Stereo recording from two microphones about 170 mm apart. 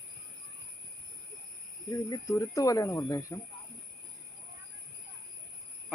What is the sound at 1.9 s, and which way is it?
Speech, 20° left (ahead or behind).